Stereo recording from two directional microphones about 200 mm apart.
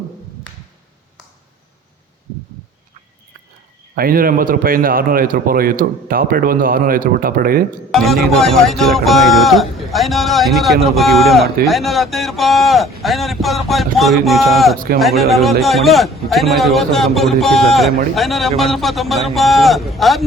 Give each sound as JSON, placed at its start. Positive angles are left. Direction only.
{"t": 3.9, "sound": "a man's voice", "side_deg": -45}
{"t": 7.9, "sound": "speech", "side_deg": 0}